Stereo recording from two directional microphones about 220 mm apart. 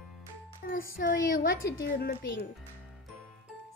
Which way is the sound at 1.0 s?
40° left (ahead or behind).